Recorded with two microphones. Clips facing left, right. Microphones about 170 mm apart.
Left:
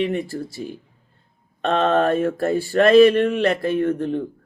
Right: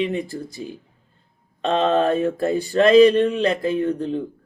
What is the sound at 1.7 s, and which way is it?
Speech, 20° right (ahead or behind).